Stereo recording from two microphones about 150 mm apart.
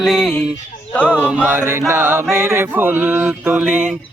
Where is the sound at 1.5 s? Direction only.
15° right (ahead or behind).